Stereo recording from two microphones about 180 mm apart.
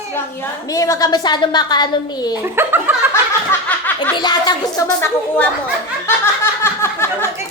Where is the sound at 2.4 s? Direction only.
10° right (ahead or behind).